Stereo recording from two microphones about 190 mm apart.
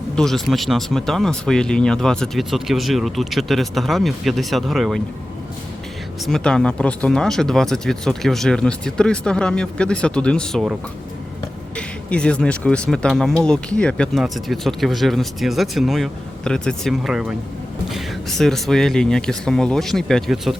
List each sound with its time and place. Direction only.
0.2 s speech: centre (ahead or behind)
6.2 s speech: 5° left (ahead or behind)
11.8 s speech: 5° left (ahead or behind)